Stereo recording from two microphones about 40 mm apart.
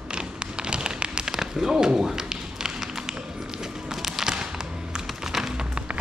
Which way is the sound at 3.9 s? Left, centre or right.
Centre.